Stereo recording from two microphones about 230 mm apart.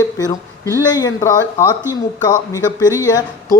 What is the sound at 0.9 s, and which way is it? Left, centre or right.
Speech, centre.